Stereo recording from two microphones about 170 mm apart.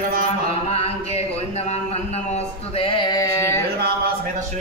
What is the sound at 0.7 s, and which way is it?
Speech, 35° left (ahead or behind).